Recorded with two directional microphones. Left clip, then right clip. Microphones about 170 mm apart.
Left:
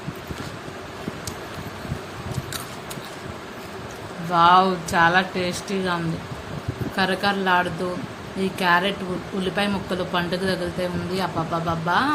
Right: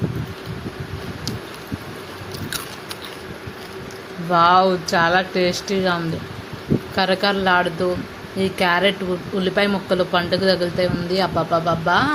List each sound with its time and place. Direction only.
4.3 s speech: 40° right (ahead or behind)